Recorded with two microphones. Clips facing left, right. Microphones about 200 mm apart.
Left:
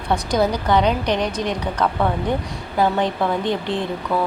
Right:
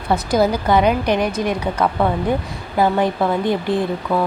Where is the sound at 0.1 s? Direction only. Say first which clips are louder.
Right 3 dB; 5° right (ahead or behind).